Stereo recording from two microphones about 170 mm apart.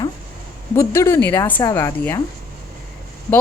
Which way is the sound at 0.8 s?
15° left (ahead or behind).